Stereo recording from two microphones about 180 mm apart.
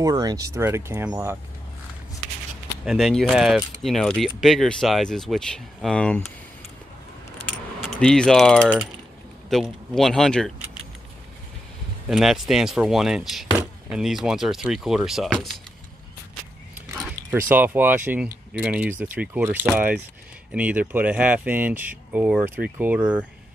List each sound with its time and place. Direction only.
0.0 s speech: 20° right (ahead or behind)
2.8 s speech: centre (ahead or behind)
7.8 s speech: centre (ahead or behind)
12.1 s speech: centre (ahead or behind)
17.3 s speech: 10° right (ahead or behind)